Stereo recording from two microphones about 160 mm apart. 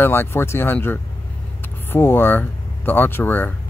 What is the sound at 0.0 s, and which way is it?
Speech, 15° left (ahead or behind).